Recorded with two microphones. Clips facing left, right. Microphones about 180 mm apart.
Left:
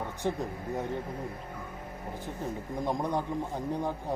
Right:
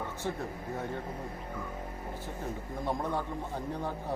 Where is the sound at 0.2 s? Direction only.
20° left (ahead or behind).